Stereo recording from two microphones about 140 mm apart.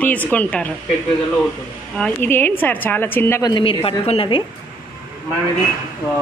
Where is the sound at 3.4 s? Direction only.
35° left (ahead or behind).